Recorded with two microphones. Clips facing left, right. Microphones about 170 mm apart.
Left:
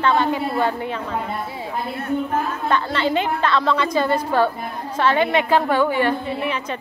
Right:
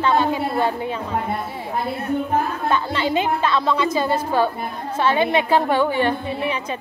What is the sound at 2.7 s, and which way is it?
A woman's voice, 10° right (ahead or behind).